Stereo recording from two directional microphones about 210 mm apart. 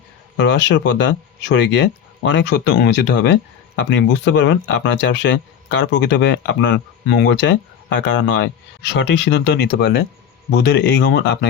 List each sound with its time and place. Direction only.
0.3 s speech: 55° left (ahead or behind)